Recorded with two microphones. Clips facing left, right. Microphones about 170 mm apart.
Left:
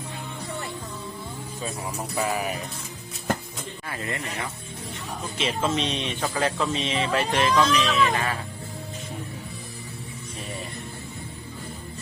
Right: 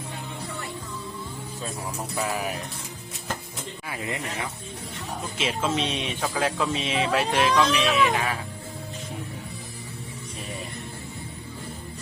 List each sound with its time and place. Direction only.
1.6 s speech: centre (ahead or behind)
3.8 s speech: 15° right (ahead or behind)